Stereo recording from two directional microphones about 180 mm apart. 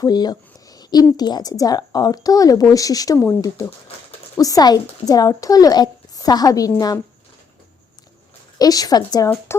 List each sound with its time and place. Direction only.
0.0 s speech: 20° left (ahead or behind)
8.5 s speech: 20° left (ahead or behind)